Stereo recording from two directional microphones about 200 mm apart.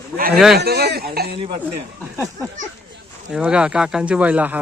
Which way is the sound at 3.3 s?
5° right (ahead or behind).